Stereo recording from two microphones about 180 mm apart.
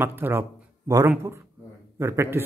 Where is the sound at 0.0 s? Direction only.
10° right (ahead or behind).